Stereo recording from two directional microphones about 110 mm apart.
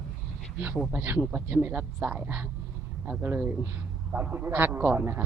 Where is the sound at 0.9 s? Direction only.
15° right (ahead or behind).